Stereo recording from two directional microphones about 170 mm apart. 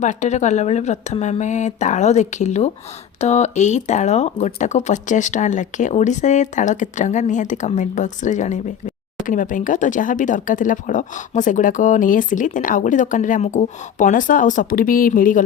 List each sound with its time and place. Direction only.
0.0 s speech: 45° left (ahead or behind)